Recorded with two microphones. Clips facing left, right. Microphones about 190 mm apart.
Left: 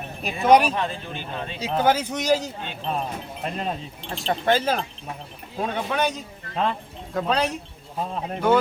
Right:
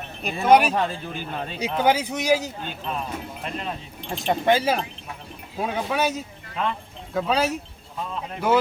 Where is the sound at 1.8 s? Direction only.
10° right (ahead or behind).